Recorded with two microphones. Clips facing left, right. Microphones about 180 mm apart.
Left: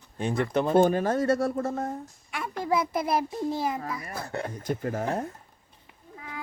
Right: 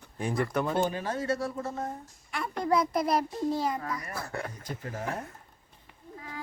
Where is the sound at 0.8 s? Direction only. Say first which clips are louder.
Left 8 dB; 50° left (ahead or behind).